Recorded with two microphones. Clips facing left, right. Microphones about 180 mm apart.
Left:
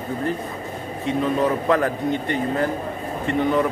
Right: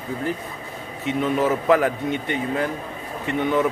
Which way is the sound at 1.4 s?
5° right (ahead or behind).